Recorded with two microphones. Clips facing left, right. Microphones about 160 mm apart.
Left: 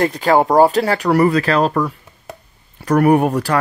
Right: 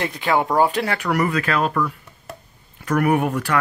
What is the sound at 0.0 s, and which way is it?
Speech, 40° left (ahead or behind).